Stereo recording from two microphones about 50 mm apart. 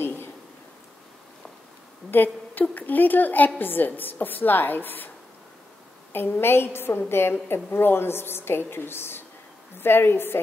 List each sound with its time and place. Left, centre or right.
0.0 s a sound: left
2.0 s a woman's voice: left
6.1 s a woman's voice: left